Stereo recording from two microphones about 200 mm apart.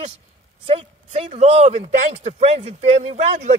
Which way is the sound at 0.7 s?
30° right (ahead or behind).